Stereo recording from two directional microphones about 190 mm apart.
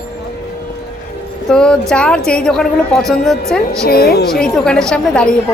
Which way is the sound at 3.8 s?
55° left (ahead or behind).